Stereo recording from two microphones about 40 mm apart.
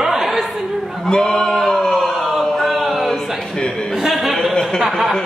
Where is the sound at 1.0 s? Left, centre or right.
Centre.